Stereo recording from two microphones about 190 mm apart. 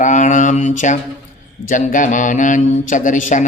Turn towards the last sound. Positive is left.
turn(degrees=40)  # may be behind; listen again after turning